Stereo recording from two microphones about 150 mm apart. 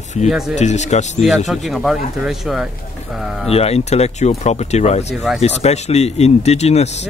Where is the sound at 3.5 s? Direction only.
45° left (ahead or behind).